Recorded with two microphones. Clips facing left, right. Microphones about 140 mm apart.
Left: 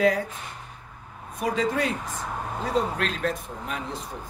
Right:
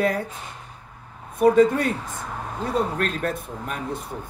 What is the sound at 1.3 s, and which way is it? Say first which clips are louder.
Speech: right 9 dB; 55° right (ahead or behind).